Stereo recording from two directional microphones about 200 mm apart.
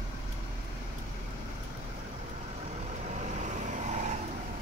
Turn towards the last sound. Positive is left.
turn(degrees=-35)  # may be behind; listen again after turning